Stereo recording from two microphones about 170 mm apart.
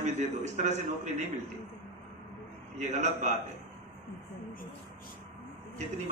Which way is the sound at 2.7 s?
45° right (ahead or behind).